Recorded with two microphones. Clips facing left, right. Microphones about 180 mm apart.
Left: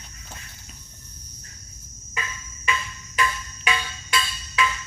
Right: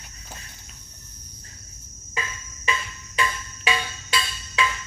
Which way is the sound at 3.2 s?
30° right (ahead or behind).